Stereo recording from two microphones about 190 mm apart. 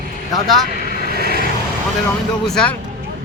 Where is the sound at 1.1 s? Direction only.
55° right (ahead or behind).